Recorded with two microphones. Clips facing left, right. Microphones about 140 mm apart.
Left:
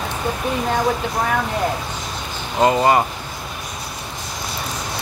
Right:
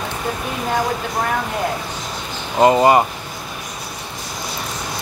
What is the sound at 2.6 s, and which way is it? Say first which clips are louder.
Speech: right 3 dB; 20° right (ahead or behind).